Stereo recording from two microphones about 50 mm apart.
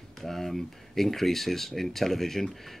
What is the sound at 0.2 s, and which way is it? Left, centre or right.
Speech, centre.